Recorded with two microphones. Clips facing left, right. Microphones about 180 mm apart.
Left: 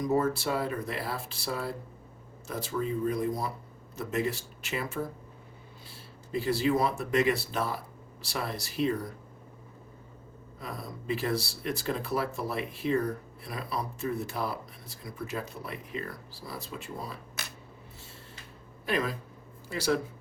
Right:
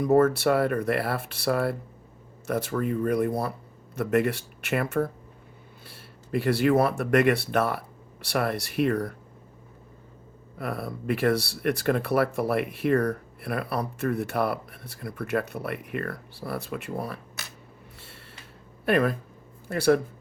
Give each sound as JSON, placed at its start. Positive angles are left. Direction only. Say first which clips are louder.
{"t": 0.0, "sound": "speech", "louder": "right 7 dB", "side_deg": -65}
{"t": 10.6, "sound": "speech", "louder": "right 8 dB", "side_deg": -65}
{"t": 18.9, "sound": "speech", "louder": "right 7 dB", "side_deg": -60}